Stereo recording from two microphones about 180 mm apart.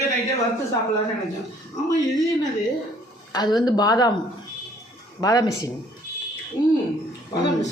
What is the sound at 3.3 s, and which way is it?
Speech, 25° left (ahead or behind).